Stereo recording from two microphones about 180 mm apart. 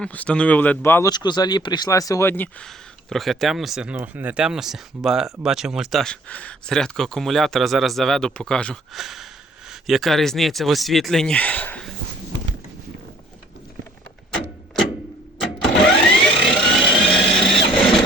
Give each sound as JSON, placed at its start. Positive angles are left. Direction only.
{"t": 0.0, "sound": "speech", "side_deg": 5}
{"t": 1.1, "sound": "speech", "side_deg": 25}
{"t": 15.4, "sound": "a sound", "side_deg": 0}